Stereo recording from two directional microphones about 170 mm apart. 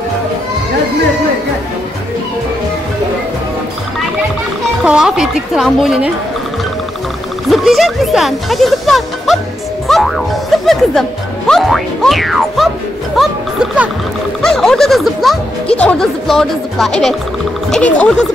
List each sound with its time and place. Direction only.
4.8 s speech: 5° right (ahead or behind)
7.4 s speech: centre (ahead or behind)